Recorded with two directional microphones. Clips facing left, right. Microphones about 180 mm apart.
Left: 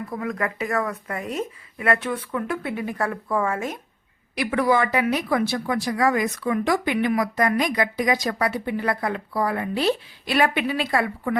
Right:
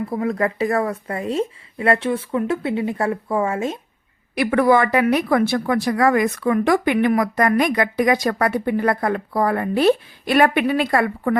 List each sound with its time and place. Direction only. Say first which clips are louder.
0.1 s speech: right 5 dB; 30° right (ahead or behind)
4.4 s a woman's voice: right 5 dB; 55° right (ahead or behind)